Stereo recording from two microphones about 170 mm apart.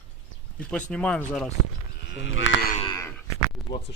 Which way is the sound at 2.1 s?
90° left.